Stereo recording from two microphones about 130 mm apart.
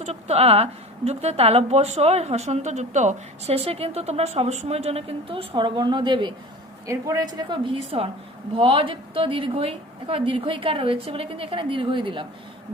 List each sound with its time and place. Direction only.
0.0 s a woman's voice: 55° right (ahead or behind); by 6.3 s 40° right (ahead or behind)
6.8 s a woman's voice: 25° right (ahead or behind); by 12.2 s 40° right (ahead or behind)